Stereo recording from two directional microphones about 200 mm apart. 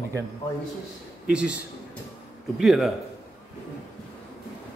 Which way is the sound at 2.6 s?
Centre (ahead or behind).